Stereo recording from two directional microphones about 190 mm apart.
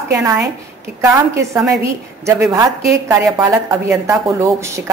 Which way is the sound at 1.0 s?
15° right (ahead or behind).